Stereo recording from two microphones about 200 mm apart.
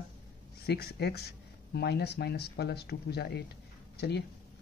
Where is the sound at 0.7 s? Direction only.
55° left (ahead or behind).